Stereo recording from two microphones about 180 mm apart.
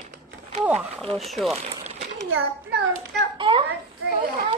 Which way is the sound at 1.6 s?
35° right (ahead or behind).